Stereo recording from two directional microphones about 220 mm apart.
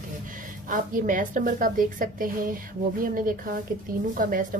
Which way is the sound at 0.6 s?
35° right (ahead or behind).